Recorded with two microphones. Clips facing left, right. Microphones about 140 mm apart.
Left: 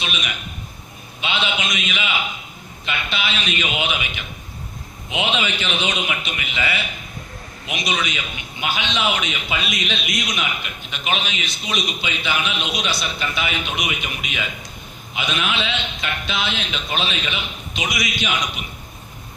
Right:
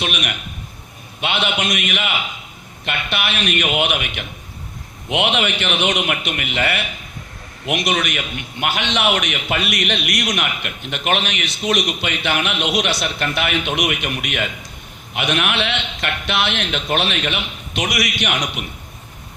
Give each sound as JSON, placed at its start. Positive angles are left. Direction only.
{"t": 0.0, "sound": "a man's voice", "side_deg": -60}